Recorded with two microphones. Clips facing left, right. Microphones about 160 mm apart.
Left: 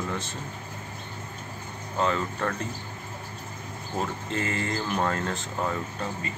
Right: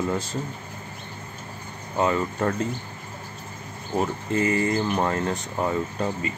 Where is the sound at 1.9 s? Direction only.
15° right (ahead or behind).